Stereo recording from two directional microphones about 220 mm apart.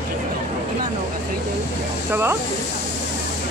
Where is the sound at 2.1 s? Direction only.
10° right (ahead or behind).